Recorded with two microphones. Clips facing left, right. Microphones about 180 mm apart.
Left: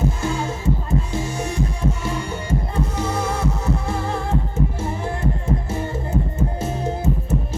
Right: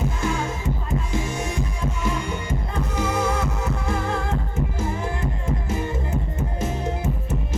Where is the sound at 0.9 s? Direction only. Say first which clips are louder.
Left 2 dB; 30° left (ahead or behind).